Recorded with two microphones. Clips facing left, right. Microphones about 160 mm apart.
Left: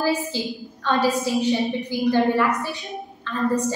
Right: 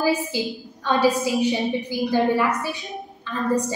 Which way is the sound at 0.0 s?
15° right (ahead or behind).